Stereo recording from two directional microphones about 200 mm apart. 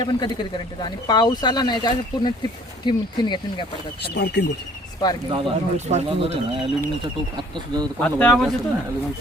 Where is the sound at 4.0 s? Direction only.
55° left (ahead or behind).